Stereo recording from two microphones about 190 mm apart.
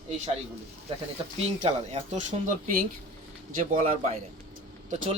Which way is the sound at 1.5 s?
35° right (ahead or behind).